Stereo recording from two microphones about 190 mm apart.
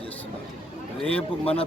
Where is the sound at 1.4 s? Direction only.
30° left (ahead or behind).